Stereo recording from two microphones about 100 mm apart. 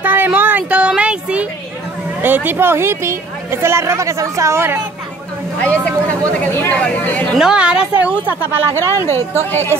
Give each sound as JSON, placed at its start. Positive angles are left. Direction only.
{"t": 0.0, "sound": "a sound", "side_deg": -20}
{"t": 2.2, "sound": "a woman's voice", "side_deg": -20}
{"t": 5.6, "sound": "speech", "side_deg": 10}
{"t": 7.3, "sound": "a woman's voice", "side_deg": -10}
{"t": 8.7, "sound": "a woman's voice", "side_deg": -25}